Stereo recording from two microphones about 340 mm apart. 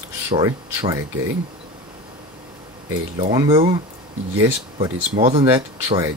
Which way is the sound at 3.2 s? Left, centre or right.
Centre.